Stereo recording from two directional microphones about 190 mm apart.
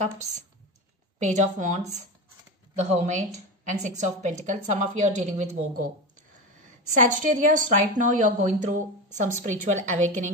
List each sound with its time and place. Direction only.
0.0 s a woman's voice: 40° right (ahead or behind)
6.9 s a woman's voice: 40° right (ahead or behind)